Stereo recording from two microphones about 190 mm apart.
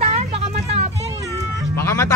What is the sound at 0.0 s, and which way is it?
Vehicle, 35° right (ahead or behind).